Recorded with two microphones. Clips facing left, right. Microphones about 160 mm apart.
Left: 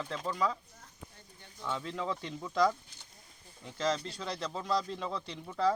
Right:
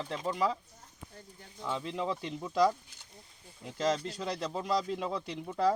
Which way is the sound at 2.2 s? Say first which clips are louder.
Right 2 dB; 5° right (ahead or behind).